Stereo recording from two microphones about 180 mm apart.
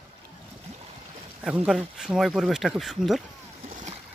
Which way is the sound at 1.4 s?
5° right (ahead or behind).